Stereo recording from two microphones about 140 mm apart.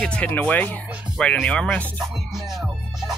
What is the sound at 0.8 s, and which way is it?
Music, 5° right (ahead or behind).